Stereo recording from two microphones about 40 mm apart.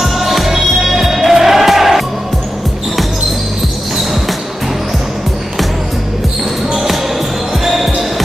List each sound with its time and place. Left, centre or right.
0.0 s music: centre
6.7 s basketball bounce: centre